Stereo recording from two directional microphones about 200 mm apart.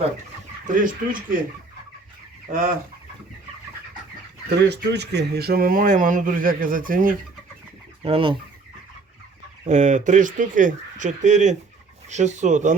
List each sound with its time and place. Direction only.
0.7 s speech: 40° right (ahead or behind)
4.4 s speech: 55° right (ahead or behind)
8.0 s speech: 25° right (ahead or behind)
9.6 s speech: 35° right (ahead or behind)